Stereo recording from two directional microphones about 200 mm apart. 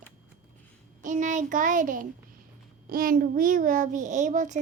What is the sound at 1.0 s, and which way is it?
A child's voice, 40° right (ahead or behind).